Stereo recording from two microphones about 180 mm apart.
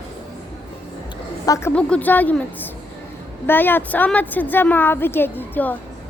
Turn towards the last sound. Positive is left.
turn(degrees=10)  # may be behind; listen again after turning